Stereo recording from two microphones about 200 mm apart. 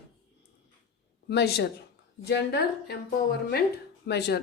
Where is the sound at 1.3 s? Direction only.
55° left (ahead or behind).